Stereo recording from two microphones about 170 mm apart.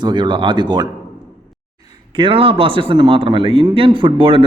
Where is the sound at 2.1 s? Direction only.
30° right (ahead or behind).